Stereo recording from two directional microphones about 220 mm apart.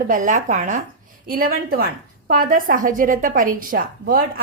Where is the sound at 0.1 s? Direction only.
35° right (ahead or behind).